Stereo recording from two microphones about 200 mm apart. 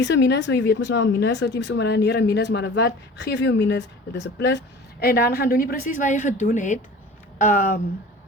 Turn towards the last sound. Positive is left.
turn(degrees=40)  # may be behind; listen again after turning